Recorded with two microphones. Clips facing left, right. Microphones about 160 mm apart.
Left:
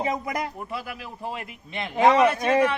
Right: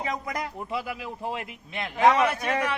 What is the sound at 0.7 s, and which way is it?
Speech, 15° right (ahead or behind).